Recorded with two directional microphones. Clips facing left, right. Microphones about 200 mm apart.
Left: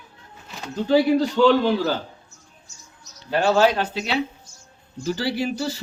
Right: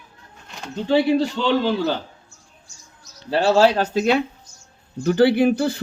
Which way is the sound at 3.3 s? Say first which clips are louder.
Right 2 dB; 30° right (ahead or behind).